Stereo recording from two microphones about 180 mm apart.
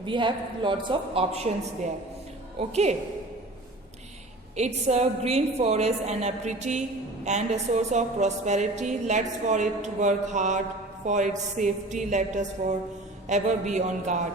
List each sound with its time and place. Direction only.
0.0 s speech: 25° right (ahead or behind)
2.6 s a woman's voice: 35° right (ahead or behind)
4.5 s a woman's voice: 40° right (ahead or behind)